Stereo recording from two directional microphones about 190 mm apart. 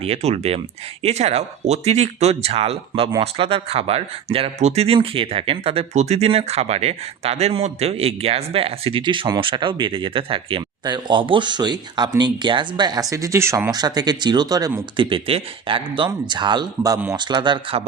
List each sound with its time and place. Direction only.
0.0 s speech: 35° right (ahead or behind)